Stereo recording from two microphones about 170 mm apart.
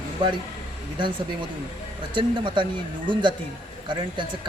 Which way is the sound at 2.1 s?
30° right (ahead or behind).